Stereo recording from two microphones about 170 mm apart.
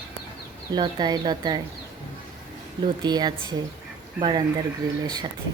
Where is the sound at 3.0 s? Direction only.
25° right (ahead or behind).